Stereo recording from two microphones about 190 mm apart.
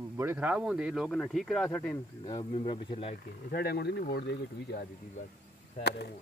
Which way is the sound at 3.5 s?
55° left (ahead or behind).